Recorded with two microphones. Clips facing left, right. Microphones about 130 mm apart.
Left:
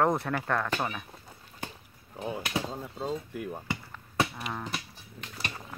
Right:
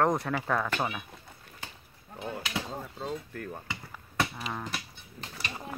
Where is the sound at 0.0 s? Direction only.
Centre (ahead or behind).